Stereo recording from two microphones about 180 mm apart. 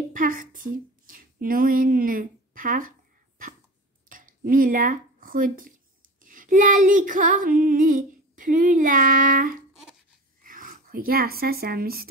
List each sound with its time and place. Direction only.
0.1 s speech: 50° right (ahead or behind)
4.1 s speech: 50° right (ahead or behind)
6.2 s female singing: 50° right (ahead or behind)
10.4 s speech: 50° right (ahead or behind)